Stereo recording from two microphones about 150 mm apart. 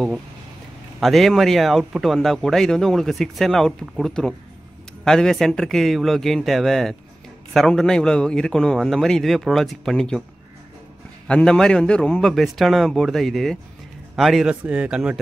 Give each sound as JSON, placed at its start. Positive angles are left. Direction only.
{"t": 1.0, "sound": "speech", "side_deg": 0}
{"t": 11.2, "sound": "speech", "side_deg": 5}